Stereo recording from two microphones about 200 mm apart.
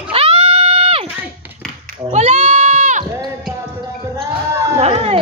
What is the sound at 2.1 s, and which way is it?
Goat, 35° right (ahead or behind).